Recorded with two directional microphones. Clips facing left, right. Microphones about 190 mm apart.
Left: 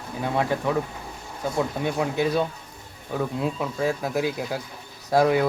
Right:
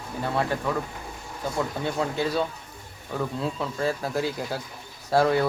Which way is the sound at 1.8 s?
15° left (ahead or behind).